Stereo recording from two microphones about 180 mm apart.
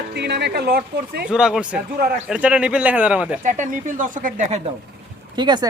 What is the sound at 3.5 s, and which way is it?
Speech, 45° right (ahead or behind).